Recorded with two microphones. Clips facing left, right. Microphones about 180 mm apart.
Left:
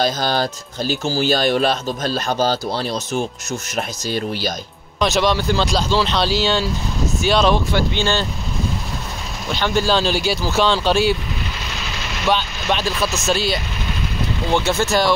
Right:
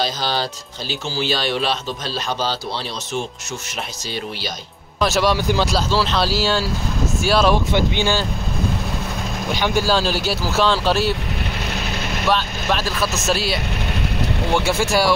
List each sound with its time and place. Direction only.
0.0 s speech: 50° left (ahead or behind)
5.0 s speech: 5° right (ahead or behind)
9.5 s speech: 10° right (ahead or behind)
12.3 s speech: centre (ahead or behind)